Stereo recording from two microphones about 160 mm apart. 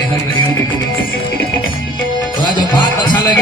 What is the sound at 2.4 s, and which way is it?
Music, 30° left (ahead or behind).